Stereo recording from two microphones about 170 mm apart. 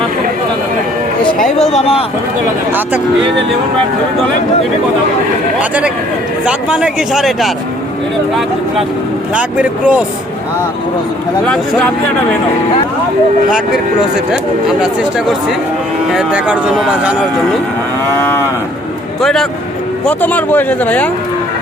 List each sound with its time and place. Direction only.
1.7 s speech: 35° left (ahead or behind)
6.4 s a man's voice: 5° right (ahead or behind)
9.3 s speech: 5° right (ahead or behind)
11.4 s a man's voice: 5° left (ahead or behind)
16.1 s speech: 5° right (ahead or behind)
18.2 s a man's voice: 10° left (ahead or behind)